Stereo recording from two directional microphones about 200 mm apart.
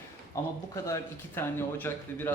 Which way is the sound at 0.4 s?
15° left (ahead or behind).